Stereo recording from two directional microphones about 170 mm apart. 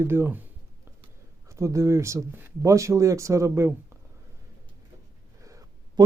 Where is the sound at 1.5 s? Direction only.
15° right (ahead or behind).